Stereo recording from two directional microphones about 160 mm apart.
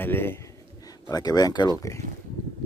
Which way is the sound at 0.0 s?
15° left (ahead or behind).